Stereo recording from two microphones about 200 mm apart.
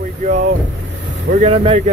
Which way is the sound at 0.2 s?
40° right (ahead or behind).